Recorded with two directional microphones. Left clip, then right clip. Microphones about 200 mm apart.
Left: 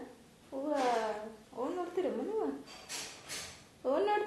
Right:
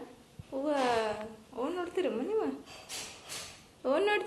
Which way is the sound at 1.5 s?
5° right (ahead or behind).